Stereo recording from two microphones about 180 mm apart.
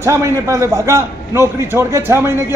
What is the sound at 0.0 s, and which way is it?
A man's voice, 15° right (ahead or behind).